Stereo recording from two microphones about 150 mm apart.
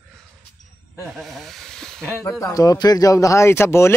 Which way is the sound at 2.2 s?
15° left (ahead or behind).